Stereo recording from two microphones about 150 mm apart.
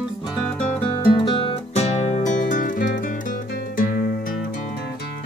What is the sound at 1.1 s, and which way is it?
Music, 30° left (ahead or behind).